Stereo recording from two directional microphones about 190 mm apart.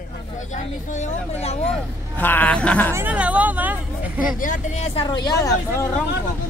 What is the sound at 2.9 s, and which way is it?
Speech, 10° right (ahead or behind).